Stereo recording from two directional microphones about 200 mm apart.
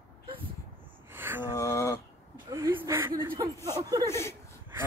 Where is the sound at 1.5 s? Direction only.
15° left (ahead or behind).